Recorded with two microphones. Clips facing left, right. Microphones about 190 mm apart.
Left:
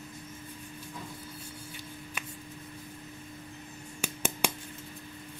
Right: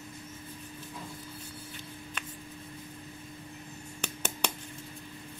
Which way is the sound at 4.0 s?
10° left (ahead or behind).